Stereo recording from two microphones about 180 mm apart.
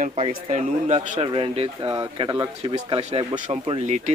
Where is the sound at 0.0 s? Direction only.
35° right (ahead or behind).